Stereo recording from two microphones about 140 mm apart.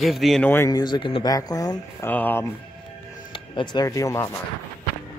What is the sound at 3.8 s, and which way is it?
Speech, 20° left (ahead or behind).